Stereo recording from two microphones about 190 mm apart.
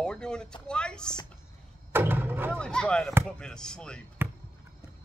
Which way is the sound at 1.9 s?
10° right (ahead or behind).